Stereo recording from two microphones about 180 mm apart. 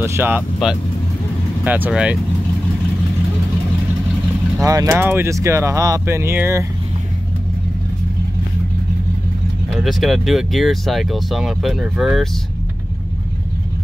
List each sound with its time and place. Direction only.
0.0 s speech: 15° right (ahead or behind)
4.6 s speech: 20° right (ahead or behind)
9.8 s speech: centre (ahead or behind)